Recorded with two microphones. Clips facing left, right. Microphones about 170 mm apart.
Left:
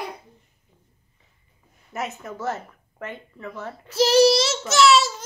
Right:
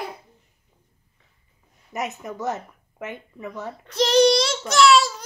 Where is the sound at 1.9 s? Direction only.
15° right (ahead or behind).